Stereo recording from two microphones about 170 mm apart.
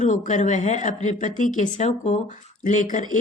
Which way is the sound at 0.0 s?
45° left (ahead or behind).